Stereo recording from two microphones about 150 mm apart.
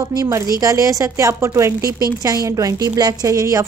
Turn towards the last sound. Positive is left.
turn(degrees=-20)  # may be behind; listen again after turning